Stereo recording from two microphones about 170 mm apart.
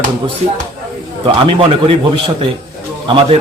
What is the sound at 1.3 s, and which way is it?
Speech, 35° right (ahead or behind).